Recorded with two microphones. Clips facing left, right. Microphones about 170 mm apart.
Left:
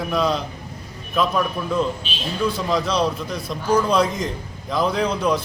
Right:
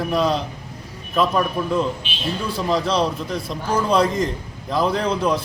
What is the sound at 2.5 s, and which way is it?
Speech, 30° right (ahead or behind).